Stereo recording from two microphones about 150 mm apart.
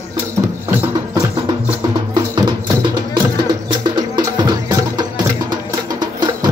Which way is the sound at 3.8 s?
30° right (ahead or behind).